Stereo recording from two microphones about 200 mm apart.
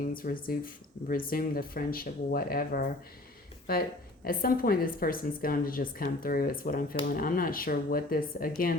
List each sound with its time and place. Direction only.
0.1 s speech: 45° left (ahead or behind)
4.2 s speech: 45° left (ahead or behind)